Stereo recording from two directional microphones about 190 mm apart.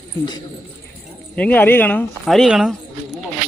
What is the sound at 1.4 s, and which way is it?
Speech, 10° left (ahead or behind).